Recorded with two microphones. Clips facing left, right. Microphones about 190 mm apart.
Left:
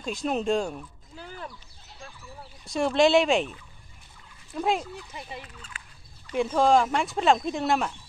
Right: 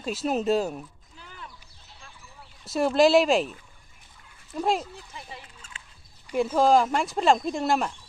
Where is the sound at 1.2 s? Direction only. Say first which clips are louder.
Left 6 dB; 40° left (ahead or behind).